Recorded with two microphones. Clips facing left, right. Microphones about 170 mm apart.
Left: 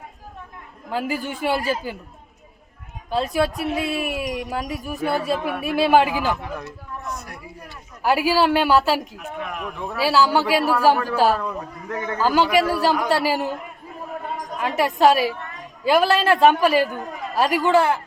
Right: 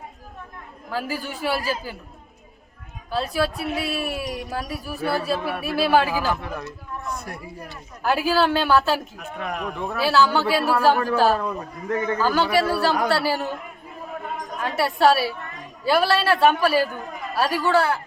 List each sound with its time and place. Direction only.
0.9 s a man's voice: 20° left (ahead or behind)
3.1 s speech: 20° left (ahead or behind)
7.1 s a sound: 30° right (ahead or behind)
8.0 s speech: 10° left (ahead or behind)
9.4 s speech: 35° right (ahead or behind)
9.9 s speech: 10° left (ahead or behind)
14.6 s a man's voice: 15° left (ahead or behind)